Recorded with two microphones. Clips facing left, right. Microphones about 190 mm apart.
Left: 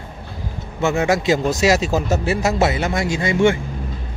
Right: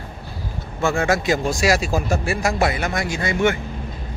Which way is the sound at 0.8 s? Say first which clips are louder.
Left 2 dB; 20° left (ahead or behind).